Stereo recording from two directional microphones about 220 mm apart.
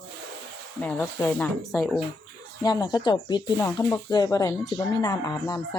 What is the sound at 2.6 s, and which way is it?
Speech, 20° left (ahead or behind).